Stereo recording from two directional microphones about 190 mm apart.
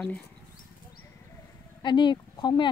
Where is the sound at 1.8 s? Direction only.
25° left (ahead or behind).